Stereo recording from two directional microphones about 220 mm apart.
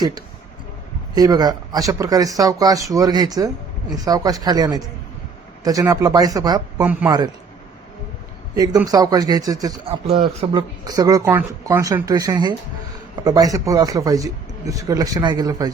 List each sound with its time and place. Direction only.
1.1 s speech: 15° right (ahead or behind)
8.5 s speech: 15° right (ahead or behind)